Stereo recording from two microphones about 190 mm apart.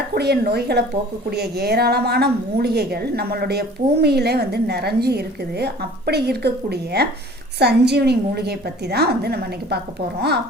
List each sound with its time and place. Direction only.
0.1 s a woman's voice: 60° right (ahead or behind)